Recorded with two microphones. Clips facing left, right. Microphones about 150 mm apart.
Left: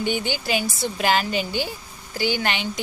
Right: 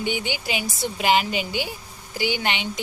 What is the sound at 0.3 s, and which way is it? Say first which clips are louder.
Speech: left 3 dB; 15° right (ahead or behind).